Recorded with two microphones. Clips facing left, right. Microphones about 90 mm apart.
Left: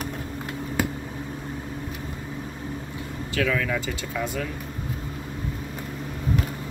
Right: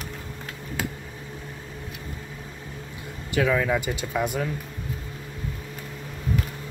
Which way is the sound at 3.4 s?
20° right (ahead or behind).